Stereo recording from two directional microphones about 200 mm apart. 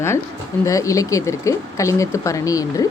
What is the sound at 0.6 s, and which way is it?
Speech, 15° left (ahead or behind).